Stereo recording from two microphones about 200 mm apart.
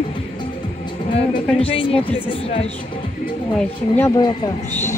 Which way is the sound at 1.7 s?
30° left (ahead or behind).